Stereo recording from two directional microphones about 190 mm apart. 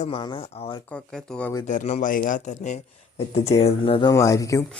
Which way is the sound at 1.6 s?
35° left (ahead or behind).